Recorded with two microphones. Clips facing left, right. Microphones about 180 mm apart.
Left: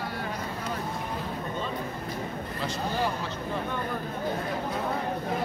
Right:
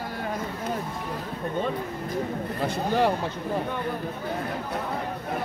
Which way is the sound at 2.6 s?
65° right (ahead or behind).